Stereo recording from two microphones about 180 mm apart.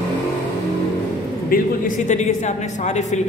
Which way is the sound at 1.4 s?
50° left (ahead or behind).